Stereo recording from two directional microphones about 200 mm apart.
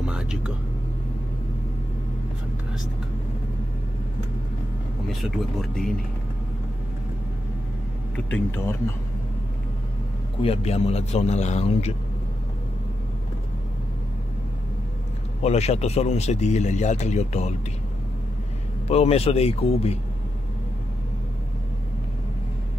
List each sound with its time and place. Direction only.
0.0 s vehicle: 5° right (ahead or behind)
5.0 s speech: centre (ahead or behind)
8.3 s speech: 10° left (ahead or behind)
10.4 s speech: 30° left (ahead or behind)
15.4 s speech: 30° left (ahead or behind)
18.9 s speech: 30° left (ahead or behind)